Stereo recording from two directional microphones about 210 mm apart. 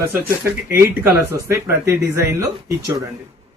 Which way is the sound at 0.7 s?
10° right (ahead or behind).